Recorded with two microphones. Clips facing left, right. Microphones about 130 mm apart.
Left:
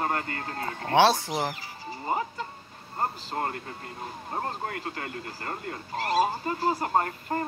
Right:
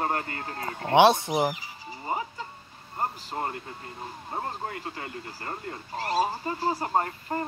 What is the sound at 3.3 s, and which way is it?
Speech, 15° right (ahead or behind).